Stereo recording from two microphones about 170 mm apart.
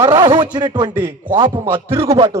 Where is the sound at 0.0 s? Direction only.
25° right (ahead or behind).